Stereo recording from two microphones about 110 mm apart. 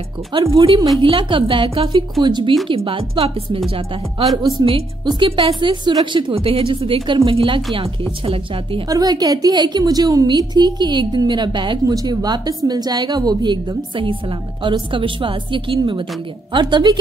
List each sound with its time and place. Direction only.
0.3 s a woman's voice: 45° right (ahead or behind)
1.0 s a woman's voice: 50° right (ahead or behind)
2.7 s a woman's voice: 55° right (ahead or behind)
8.8 s a woman's voice: 35° right (ahead or behind)
11.9 s a woman's voice: 35° right (ahead or behind)